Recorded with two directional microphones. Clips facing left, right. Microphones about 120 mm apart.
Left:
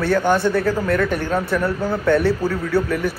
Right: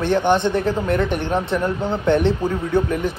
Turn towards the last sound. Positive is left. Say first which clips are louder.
# even
turn(degrees=-20)  # may be behind; listen again after turning